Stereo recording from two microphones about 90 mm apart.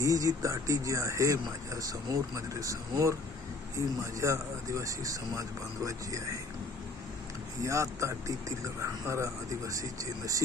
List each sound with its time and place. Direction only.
0.0 s speech: 40° right (ahead or behind)
7.6 s speech: 35° right (ahead or behind)